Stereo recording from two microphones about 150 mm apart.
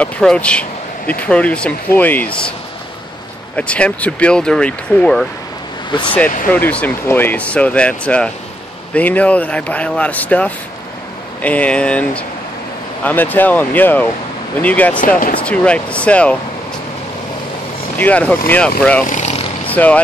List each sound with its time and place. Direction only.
0.0 s speech: 5° left (ahead or behind)
3.5 s speech: 10° left (ahead or behind)
5.9 s speech: 35° left (ahead or behind)
6.5 s speech: 10° left (ahead or behind)
17.9 s speech: 10° left (ahead or behind)
19.0 s vehicle: 50° left (ahead or behind)
19.7 s speech: 10° left (ahead or behind)